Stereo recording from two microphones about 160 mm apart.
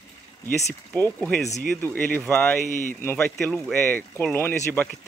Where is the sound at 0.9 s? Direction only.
10° left (ahead or behind).